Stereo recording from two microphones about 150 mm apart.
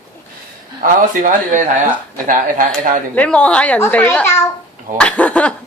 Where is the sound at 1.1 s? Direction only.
60° right (ahead or behind).